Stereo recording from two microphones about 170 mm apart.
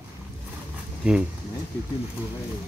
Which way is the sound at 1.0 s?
5° right (ahead or behind).